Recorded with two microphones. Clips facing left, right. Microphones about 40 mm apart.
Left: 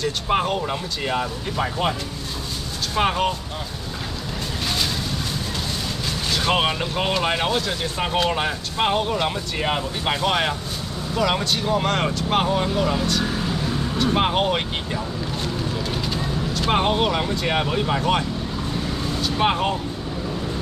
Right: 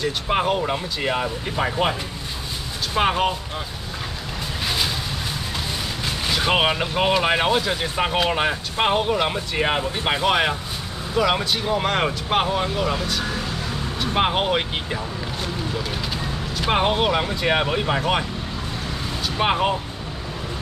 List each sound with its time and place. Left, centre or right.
0.0 s speech: centre
6.0 s speech: centre
16.1 s speech: centre
19.2 s speech: centre